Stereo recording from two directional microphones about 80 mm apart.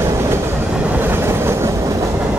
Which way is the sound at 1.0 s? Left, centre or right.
Right.